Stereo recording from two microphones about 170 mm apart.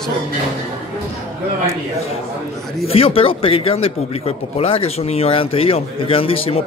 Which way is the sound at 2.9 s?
35° left (ahead or behind).